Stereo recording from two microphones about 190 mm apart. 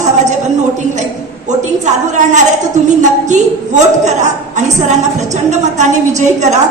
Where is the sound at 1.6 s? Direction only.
40° right (ahead or behind).